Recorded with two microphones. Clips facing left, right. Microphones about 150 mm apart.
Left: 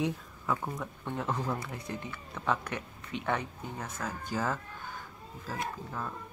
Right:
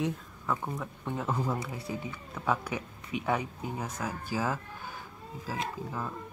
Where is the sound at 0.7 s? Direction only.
Centre (ahead or behind).